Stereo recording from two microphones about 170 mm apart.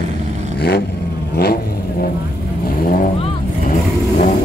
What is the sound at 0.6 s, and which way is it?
Vehicle, 70° left (ahead or behind).